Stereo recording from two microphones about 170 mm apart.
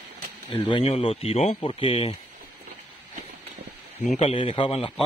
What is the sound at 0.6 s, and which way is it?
Speech, 35° left (ahead or behind).